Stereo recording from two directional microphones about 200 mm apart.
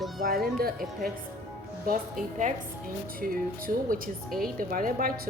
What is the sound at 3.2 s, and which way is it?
Speech, 45° right (ahead or behind).